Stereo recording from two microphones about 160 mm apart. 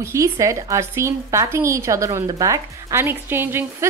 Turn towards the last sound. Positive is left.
turn(degrees=-15)  # may be behind; listen again after turning